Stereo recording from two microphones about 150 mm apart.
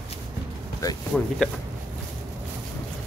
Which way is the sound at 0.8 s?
20° left (ahead or behind).